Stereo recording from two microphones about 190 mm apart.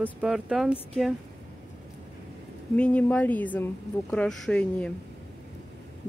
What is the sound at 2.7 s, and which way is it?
Speech, 5° left (ahead or behind).